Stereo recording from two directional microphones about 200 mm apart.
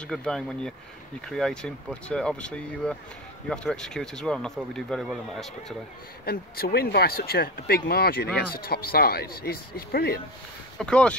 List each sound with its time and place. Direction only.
0.0 s speech: 5° left (ahead or behind)
6.2 s speech: 50° left (ahead or behind)
10.8 s speech: 5° left (ahead or behind)